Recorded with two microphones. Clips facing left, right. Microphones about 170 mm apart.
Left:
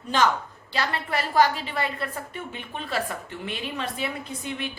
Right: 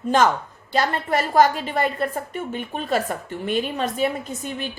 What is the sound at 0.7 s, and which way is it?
A woman's voice, 45° right (ahead or behind).